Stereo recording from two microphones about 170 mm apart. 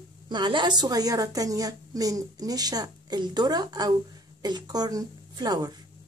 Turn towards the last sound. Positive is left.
turn(degrees=-25)  # may be behind; listen again after turning